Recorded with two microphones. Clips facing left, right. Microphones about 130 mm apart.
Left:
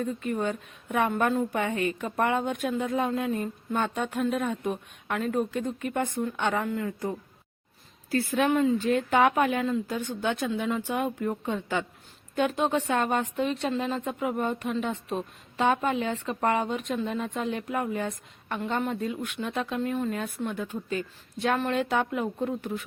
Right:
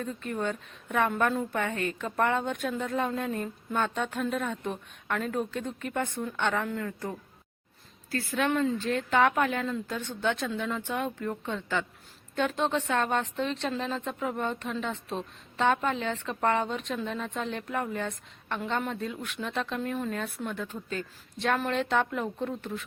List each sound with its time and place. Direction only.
0.0 s speech: 10° left (ahead or behind)
8.1 s speech: 15° left (ahead or behind)